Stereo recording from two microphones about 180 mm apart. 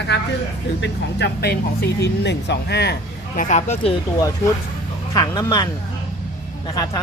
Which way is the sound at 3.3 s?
45° left (ahead or behind).